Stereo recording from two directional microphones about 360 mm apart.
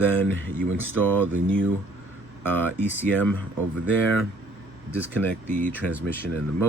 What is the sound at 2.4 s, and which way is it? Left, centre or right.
Speech, centre.